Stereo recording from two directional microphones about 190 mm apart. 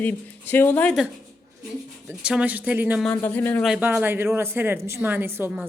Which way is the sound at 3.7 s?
10° right (ahead or behind).